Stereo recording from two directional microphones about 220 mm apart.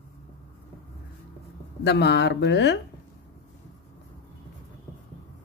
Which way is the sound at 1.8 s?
50° left (ahead or behind).